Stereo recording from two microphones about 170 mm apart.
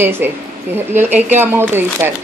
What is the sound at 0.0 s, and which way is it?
A woman's voice, 10° right (ahead or behind).